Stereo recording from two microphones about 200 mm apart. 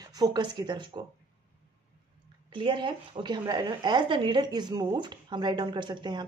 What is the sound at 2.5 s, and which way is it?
Speech, 25° right (ahead or behind).